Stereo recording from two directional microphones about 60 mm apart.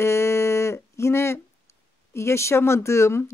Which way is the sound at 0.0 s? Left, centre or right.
Left.